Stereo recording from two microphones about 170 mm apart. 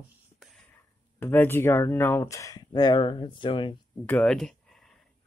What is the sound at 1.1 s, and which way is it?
Speech, 15° left (ahead or behind).